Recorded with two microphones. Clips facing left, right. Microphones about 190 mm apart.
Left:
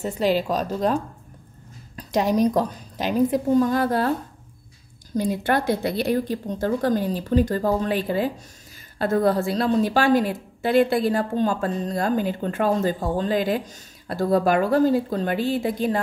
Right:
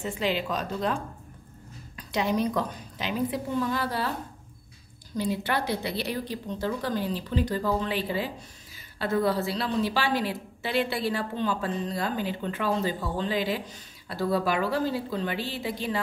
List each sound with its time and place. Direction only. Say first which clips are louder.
0.0 s speech: left 7 dB; 40° left (ahead or behind)
2.0 s a woman's voice: left 6 dB; 40° left (ahead or behind)
5.1 s a woman's voice: left 6 dB; 45° left (ahead or behind)